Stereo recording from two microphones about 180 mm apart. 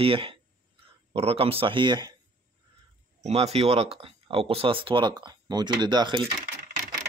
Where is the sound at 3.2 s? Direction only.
35° right (ahead or behind).